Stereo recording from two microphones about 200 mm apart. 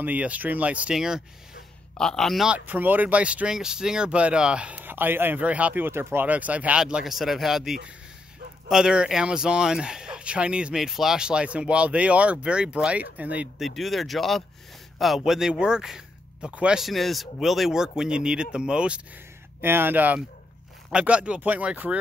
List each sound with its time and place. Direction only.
0.0 s speech: 5° right (ahead or behind)